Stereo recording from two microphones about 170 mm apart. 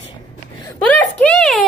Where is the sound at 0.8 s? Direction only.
5° left (ahead or behind).